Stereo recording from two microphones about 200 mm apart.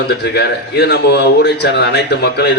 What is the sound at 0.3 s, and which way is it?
Speech, 55° left (ahead or behind).